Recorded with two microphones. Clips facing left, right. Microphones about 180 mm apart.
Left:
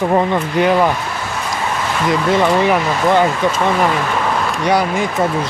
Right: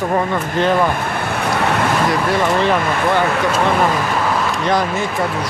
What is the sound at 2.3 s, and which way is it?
Speech, 15° left (ahead or behind).